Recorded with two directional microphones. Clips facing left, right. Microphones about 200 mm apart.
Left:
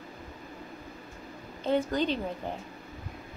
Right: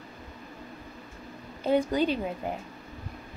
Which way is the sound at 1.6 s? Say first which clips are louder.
Right 3 dB; 10° right (ahead or behind).